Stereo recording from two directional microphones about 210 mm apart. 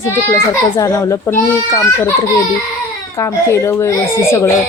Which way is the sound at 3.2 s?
15° left (ahead or behind).